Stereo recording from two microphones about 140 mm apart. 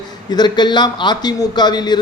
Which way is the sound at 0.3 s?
30° left (ahead or behind).